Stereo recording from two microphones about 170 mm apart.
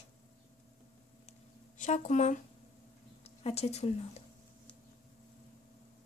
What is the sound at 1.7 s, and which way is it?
A woman's voice, 45° left (ahead or behind).